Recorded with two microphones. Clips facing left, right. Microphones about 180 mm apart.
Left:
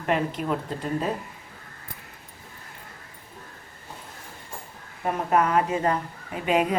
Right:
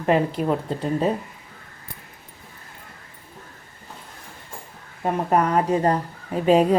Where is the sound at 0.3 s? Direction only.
35° right (ahead or behind).